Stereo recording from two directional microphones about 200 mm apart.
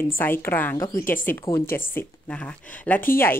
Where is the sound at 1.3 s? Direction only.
15° left (ahead or behind).